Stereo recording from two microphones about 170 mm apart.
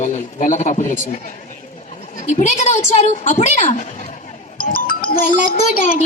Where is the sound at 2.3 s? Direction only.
45° left (ahead or behind).